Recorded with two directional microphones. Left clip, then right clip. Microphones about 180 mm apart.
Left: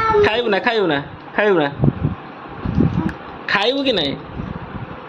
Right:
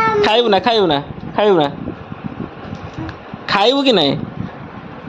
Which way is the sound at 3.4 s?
30° right (ahead or behind).